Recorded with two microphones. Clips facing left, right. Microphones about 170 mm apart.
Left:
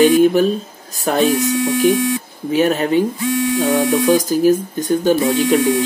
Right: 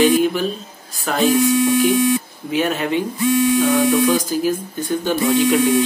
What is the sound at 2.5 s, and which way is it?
Speech, 40° left (ahead or behind).